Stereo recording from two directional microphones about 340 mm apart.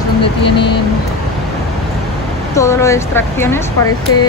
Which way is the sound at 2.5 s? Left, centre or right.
Centre.